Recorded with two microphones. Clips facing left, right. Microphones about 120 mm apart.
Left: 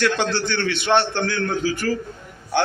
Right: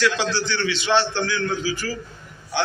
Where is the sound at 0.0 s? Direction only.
55° left (ahead or behind).